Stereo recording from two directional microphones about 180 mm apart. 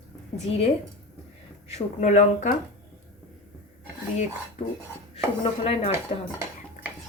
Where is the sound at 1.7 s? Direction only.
40° left (ahead or behind).